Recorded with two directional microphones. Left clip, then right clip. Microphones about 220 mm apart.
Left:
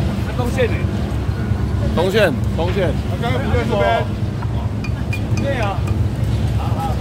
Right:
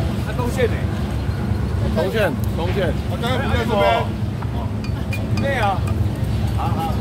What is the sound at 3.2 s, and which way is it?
Speech, 50° right (ahead or behind).